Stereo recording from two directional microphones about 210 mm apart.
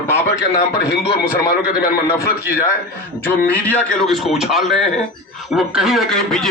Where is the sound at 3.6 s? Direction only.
5° left (ahead or behind).